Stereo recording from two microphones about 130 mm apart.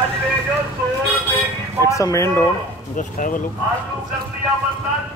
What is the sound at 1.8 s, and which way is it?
Speech, 25° left (ahead or behind).